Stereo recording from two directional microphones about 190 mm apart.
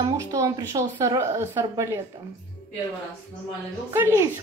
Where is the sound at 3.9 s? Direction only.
15° right (ahead or behind).